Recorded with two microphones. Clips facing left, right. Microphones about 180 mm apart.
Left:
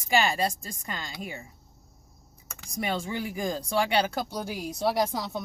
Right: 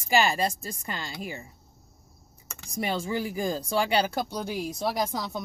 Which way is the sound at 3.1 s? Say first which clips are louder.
Right 3 dB; 35° right (ahead or behind).